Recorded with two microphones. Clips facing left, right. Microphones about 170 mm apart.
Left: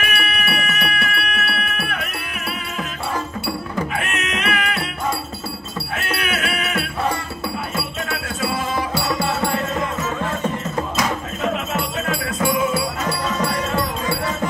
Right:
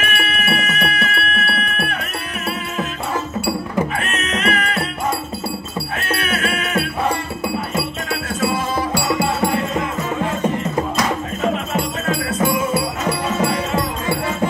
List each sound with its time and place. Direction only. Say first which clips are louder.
0.0 s music: right 2 dB; 40° right (ahead or behind)
4.0 s music: right 3 dB; 40° right (ahead or behind)
6.0 s music: right 3 dB; 45° right (ahead or behind)
8.4 s music: right 3 dB; 40° right (ahead or behind)
11.5 s music: right 2 dB; 45° right (ahead or behind)
13.3 s music: right 5 dB; 30° right (ahead or behind)